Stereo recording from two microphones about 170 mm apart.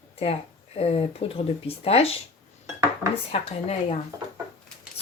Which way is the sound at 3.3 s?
35° left (ahead or behind).